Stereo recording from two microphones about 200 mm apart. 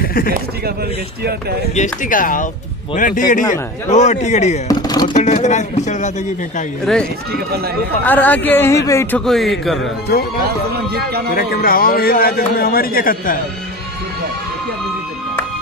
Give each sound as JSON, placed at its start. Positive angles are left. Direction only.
{"t": 0.0, "sound": "a sound", "side_deg": 45}
{"t": 1.8, "sound": "a man's voice", "side_deg": 40}
{"t": 4.6, "sound": "speech", "side_deg": 20}
{"t": 5.1, "sound": "a man's voice", "side_deg": 35}
{"t": 8.0, "sound": "speech", "side_deg": 10}
{"t": 9.2, "sound": "speech", "side_deg": 0}
{"t": 10.1, "sound": "a man's voice", "side_deg": 50}
{"t": 10.7, "sound": "speech", "side_deg": -50}
{"t": 11.3, "sound": "a man's voice", "side_deg": 50}